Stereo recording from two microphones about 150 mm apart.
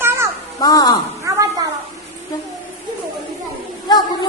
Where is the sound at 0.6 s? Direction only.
25° left (ahead or behind).